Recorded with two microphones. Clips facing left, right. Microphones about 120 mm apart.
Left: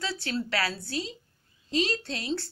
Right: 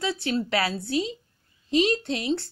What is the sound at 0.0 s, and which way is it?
Speech, 20° right (ahead or behind).